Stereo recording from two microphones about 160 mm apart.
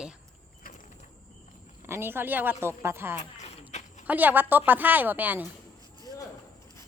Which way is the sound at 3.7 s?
45° left (ahead or behind).